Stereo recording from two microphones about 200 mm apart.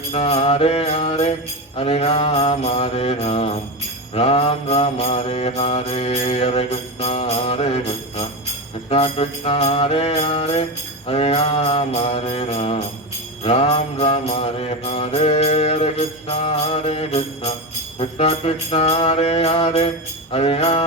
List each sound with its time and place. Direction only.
0.1 s mantra: 30° left (ahead or behind)